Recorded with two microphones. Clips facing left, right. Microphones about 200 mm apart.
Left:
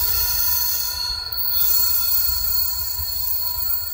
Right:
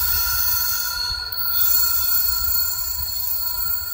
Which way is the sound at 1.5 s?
Centre (ahead or behind).